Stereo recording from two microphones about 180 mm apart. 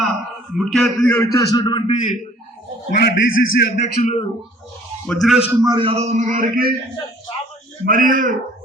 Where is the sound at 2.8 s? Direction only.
65° left (ahead or behind); by 3.6 s 85° left.